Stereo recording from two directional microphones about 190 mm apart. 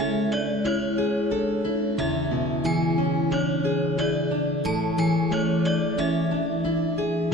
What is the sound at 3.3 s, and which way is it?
Music, centre (ahead or behind).